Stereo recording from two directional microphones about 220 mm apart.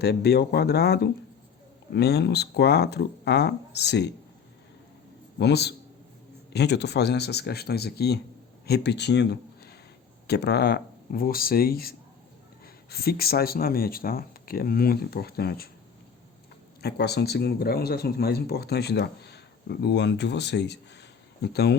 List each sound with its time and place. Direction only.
0.0 s speech: 45° left (ahead or behind)
5.4 s speech: 50° left (ahead or behind)
16.8 s speech: 50° left (ahead or behind)